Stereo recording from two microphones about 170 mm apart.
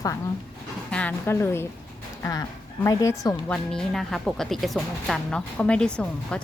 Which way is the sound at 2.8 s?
20° left (ahead or behind).